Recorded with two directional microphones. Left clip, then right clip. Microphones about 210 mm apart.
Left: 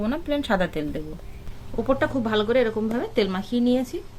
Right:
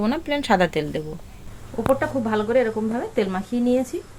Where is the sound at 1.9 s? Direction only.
15° left (ahead or behind).